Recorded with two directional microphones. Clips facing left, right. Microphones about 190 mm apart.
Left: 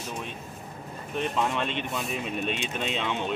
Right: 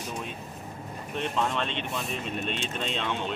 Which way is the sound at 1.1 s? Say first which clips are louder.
Left 1 dB; 5° left (ahead or behind).